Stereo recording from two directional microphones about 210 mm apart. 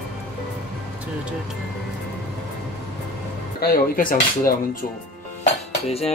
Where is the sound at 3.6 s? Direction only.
45° left (ahead or behind).